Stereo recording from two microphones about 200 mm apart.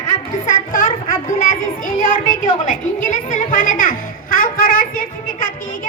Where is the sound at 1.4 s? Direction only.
40° left (ahead or behind).